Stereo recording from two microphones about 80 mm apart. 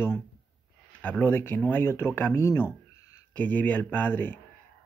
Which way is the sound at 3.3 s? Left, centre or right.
Left.